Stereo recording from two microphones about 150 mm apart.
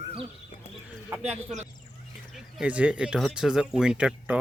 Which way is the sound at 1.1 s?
10° right (ahead or behind).